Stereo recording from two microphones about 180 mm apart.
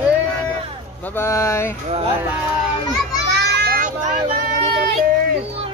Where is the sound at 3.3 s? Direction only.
60° right (ahead or behind); by 4.2 s 45° right (ahead or behind).